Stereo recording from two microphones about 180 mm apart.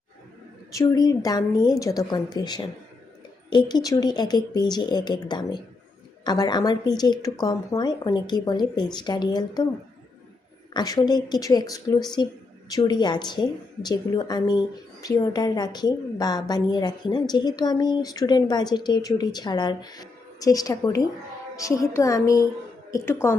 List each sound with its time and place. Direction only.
0.7 s a woman's voice: 20° left (ahead or behind)
10.8 s a woman's voice: 20° left (ahead or behind)